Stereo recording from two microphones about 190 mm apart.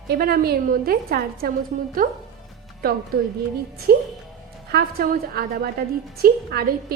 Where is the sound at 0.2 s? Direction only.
50° right (ahead or behind).